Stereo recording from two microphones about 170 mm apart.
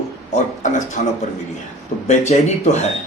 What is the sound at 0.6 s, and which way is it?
Speech, 45° left (ahead or behind).